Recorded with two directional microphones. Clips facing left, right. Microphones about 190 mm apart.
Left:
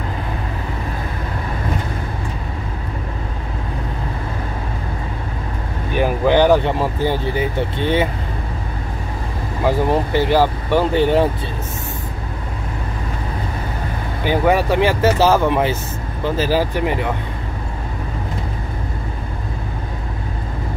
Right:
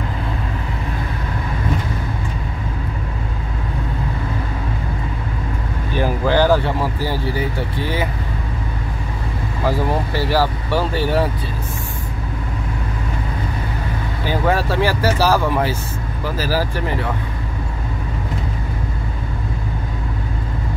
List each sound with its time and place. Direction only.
5.9 s speech: 20° left (ahead or behind)
9.7 s speech: 20° left (ahead or behind)
14.2 s speech: 15° left (ahead or behind)